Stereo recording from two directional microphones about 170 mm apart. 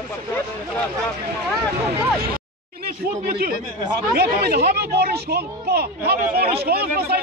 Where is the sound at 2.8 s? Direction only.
65° right (ahead or behind).